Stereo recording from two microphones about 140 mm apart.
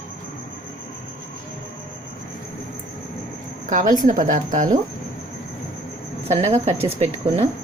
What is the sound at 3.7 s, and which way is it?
A woman's voice, 65° right (ahead or behind).